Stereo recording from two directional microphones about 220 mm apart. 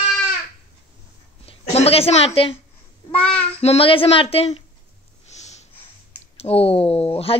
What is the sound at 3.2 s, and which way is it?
Child singing, 5° left (ahead or behind).